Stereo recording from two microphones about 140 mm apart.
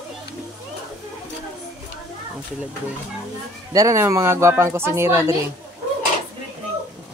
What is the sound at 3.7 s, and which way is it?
Speech, 25° right (ahead or behind).